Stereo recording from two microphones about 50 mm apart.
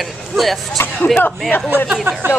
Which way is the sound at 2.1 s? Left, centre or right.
Right.